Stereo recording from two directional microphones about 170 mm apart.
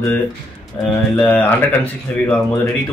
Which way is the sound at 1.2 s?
10° left (ahead or behind).